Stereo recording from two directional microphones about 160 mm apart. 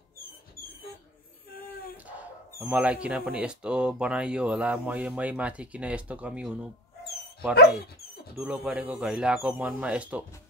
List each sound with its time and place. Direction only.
2.6 s speech: 10° right (ahead or behind)
8.4 s speech: 10° right (ahead or behind)